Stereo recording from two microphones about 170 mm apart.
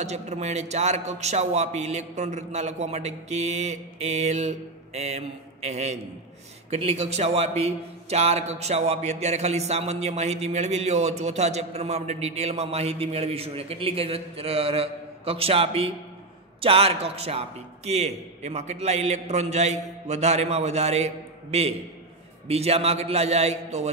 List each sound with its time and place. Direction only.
0.0 s a man's voice: 40° right (ahead or behind)